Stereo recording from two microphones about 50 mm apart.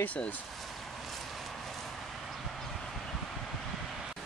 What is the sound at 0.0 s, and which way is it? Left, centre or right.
Speech, left.